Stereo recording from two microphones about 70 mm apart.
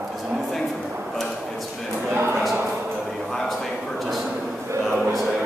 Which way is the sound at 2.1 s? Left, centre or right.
Right.